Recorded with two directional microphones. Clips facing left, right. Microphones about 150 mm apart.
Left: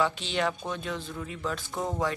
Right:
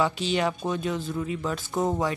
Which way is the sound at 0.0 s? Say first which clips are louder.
Right 3 dB; 5° right (ahead or behind).